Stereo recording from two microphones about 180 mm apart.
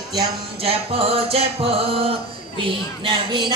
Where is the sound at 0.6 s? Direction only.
35° right (ahead or behind).